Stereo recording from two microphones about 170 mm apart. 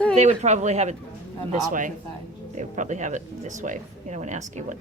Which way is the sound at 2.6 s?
45° right (ahead or behind).